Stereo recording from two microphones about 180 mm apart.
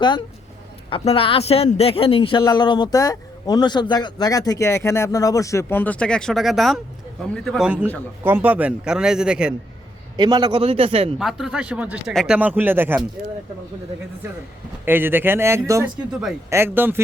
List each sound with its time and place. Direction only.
0.9 s a woman's voice: 30° left (ahead or behind); by 9.6 s 5° right (ahead or behind)
10.2 s a man's voice: 25° right (ahead or behind)
11.2 s a man's voice: centre (ahead or behind)
14.8 s speech: 10° right (ahead or behind)